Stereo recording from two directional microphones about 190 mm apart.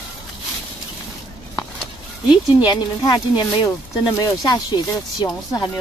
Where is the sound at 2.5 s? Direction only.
20° left (ahead or behind).